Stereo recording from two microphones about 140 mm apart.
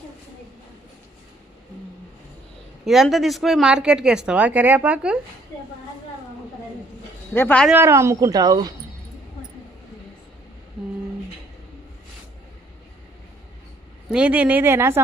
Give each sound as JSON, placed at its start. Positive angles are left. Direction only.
{"t": 2.8, "sound": "speech", "side_deg": 0}
{"t": 7.3, "sound": "speech", "side_deg": 10}
{"t": 7.7, "sound": "a woman's voice", "side_deg": -15}
{"t": 14.1, "sound": "speech", "side_deg": -10}